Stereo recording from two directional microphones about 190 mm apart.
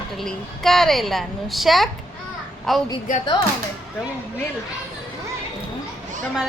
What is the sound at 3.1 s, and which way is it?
Speech, 40° left (ahead or behind).